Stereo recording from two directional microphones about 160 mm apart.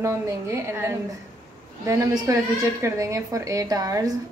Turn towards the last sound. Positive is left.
turn(degrees=-25)  # may be behind; listen again after turning